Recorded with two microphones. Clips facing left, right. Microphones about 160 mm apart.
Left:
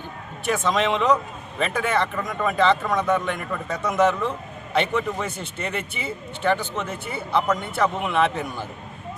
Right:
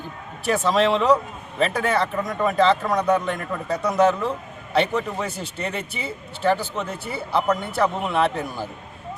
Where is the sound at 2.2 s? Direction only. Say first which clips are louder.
Right 2 dB; 30° right (ahead or behind).